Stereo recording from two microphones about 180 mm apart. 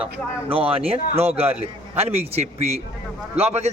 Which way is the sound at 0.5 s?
30° right (ahead or behind).